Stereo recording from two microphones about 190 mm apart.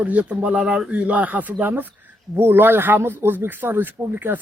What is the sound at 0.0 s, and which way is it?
Speech, 5° right (ahead or behind).